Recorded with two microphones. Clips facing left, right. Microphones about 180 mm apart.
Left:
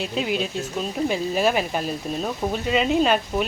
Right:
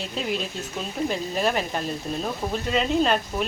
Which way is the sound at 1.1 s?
5° left (ahead or behind).